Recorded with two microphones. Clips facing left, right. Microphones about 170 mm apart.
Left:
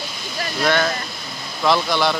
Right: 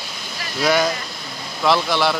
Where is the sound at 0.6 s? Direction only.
10° right (ahead or behind).